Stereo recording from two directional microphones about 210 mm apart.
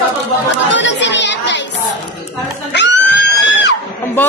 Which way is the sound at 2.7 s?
55° left (ahead or behind).